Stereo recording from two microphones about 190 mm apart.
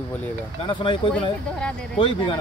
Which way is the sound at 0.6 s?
25° left (ahead or behind).